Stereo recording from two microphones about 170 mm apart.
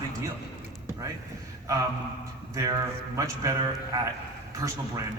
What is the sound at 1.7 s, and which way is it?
A man's voice, 20° right (ahead or behind).